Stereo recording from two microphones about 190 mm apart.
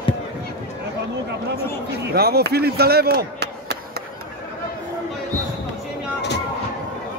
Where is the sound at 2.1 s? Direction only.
55° right (ahead or behind).